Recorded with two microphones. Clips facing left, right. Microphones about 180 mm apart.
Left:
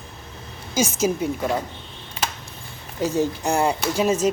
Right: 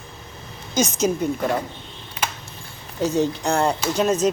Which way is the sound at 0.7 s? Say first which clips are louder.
Right 1 dB; 5° left (ahead or behind).